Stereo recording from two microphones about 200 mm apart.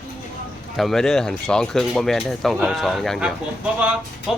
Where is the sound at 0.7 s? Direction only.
Centre (ahead or behind).